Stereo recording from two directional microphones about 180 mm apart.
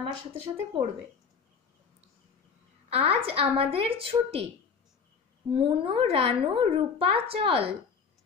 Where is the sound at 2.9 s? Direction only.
35° right (ahead or behind).